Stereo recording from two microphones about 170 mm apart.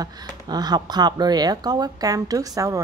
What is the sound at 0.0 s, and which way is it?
A woman's voice, 25° right (ahead or behind).